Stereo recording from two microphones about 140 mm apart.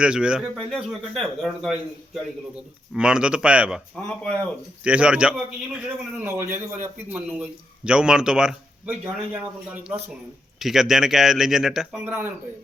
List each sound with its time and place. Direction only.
0.0 s speech: 5° right (ahead or behind)
3.9 s speech: 5° left (ahead or behind)
4.8 s speech: 10° right (ahead or behind)
7.9 s speech: 5° right (ahead or behind)